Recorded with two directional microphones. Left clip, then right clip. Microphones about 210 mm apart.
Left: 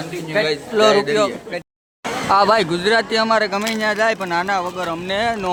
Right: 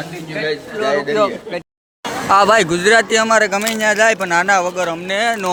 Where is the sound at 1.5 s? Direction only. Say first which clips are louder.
Right 2 dB; 25° right (ahead or behind).